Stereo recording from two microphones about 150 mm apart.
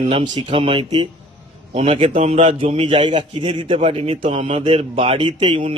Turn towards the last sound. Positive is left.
turn(degrees=-35)  # may be behind; listen again after turning